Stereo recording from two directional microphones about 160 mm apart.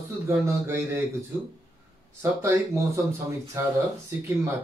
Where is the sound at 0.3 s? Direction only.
15° right (ahead or behind).